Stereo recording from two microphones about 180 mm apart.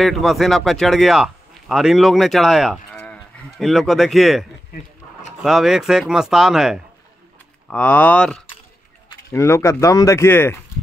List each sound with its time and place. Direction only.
0.0 s speech: centre (ahead or behind)
3.0 s cattle: 5° left (ahead or behind)
5.4 s speech: centre (ahead or behind)
7.7 s speech: 10° left (ahead or behind)